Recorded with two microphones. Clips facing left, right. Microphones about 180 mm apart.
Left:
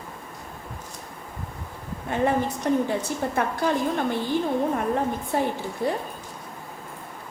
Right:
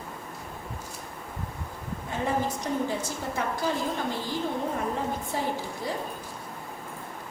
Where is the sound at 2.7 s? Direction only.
60° left (ahead or behind).